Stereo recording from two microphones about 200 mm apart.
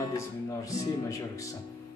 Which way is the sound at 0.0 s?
15° left (ahead or behind).